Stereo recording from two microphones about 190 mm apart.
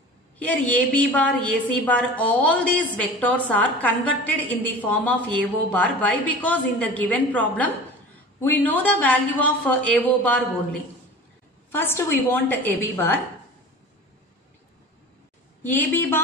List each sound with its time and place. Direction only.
0.4 s a woman's voice: 5° left (ahead or behind)
11.7 s a woman's voice: 10° left (ahead or behind)
15.6 s a woman's voice: 10° left (ahead or behind)